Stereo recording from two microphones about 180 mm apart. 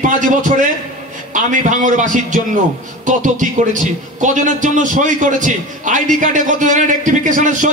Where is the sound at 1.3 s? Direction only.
45° right (ahead or behind).